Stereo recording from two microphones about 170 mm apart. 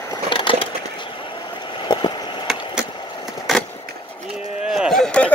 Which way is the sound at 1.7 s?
30° left (ahead or behind).